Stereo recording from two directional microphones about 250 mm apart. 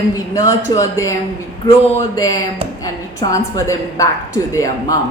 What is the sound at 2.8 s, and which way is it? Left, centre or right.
A woman's voice, centre.